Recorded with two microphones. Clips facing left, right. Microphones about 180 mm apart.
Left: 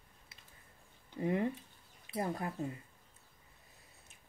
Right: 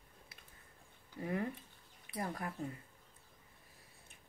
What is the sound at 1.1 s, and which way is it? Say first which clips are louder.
Speech: left 5 dB; 25° left (ahead or behind).